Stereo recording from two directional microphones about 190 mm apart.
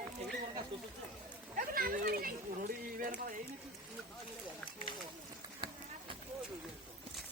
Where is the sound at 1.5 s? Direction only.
45° right (ahead or behind).